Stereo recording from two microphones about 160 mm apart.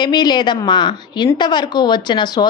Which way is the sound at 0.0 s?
25° left (ahead or behind).